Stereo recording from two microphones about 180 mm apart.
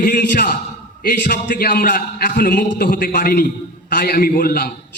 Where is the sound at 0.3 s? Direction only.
55° left (ahead or behind).